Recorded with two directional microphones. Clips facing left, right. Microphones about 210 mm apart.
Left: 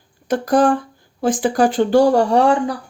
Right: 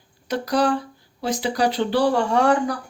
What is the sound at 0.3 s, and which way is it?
Speech, 50° left (ahead or behind).